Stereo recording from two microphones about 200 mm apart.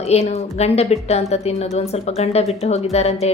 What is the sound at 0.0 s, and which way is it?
Speech, 30° left (ahead or behind).